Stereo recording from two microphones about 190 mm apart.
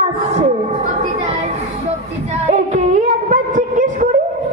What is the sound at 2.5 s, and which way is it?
Music, 35° right (ahead or behind).